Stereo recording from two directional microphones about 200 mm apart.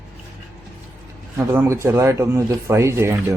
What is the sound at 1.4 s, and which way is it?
Speech, 15° right (ahead or behind).